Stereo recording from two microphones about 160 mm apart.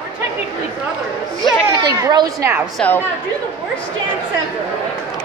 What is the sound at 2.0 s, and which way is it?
Speech, 25° right (ahead or behind).